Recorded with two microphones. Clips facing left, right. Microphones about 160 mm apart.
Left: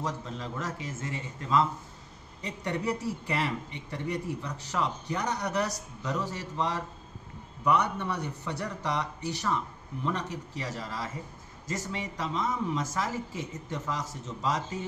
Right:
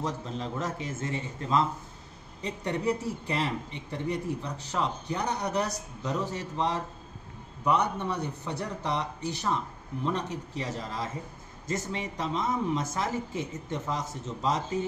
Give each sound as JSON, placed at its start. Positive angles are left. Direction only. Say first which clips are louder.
{"t": 0.0, "sound": "speech", "louder": "right 2 dB", "side_deg": -20}